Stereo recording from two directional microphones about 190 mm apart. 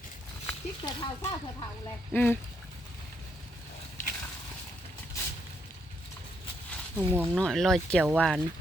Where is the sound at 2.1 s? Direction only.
10° left (ahead or behind).